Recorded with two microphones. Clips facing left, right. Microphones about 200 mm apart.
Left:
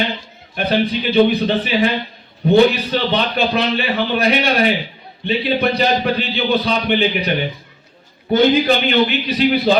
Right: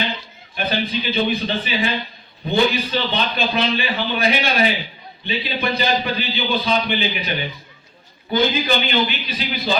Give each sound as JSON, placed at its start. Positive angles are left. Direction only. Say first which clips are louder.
{"t": 0.5, "sound": "a man's voice", "louder": "left 5 dB", "side_deg": 65}